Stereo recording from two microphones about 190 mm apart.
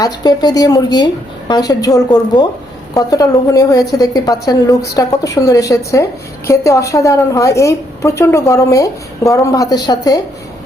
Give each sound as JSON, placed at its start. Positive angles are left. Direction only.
{"t": 0.0, "sound": "a woman's voice", "side_deg": 20}